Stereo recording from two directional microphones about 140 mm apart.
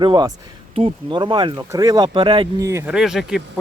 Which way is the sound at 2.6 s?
20° right (ahead or behind).